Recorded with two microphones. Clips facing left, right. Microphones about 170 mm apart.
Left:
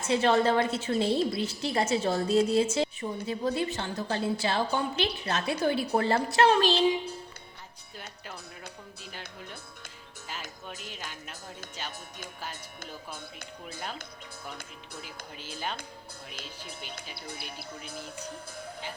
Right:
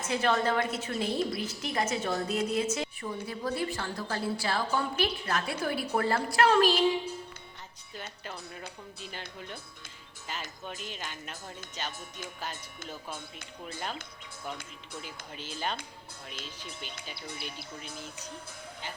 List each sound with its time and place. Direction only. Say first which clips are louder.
0.1 s a woman's voice: left 4 dB; 30° left (ahead or behind)
7.9 s speech: right 2 dB; 5° left (ahead or behind)
10.2 s speech: right 2 dB; centre (ahead or behind)
16.6 s speech: left 1 dB; 30° left (ahead or behind)
17.4 s a woman's voice: even; 60° left (ahead or behind)